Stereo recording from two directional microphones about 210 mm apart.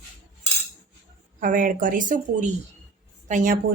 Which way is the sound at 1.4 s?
40° right (ahead or behind).